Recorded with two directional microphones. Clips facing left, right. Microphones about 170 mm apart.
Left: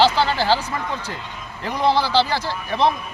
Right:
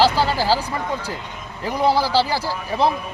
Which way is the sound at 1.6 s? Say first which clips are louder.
Right 1 dB; 10° right (ahead or behind).